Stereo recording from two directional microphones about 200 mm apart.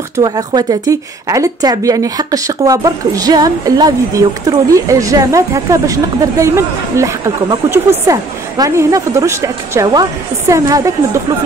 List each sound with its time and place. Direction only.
0.2 s a woman's voice: 15° right (ahead or behind)